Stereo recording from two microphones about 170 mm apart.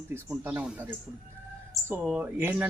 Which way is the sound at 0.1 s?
10° right (ahead or behind).